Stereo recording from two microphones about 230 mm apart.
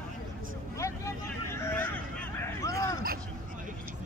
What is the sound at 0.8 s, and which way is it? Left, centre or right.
Vehicle, centre.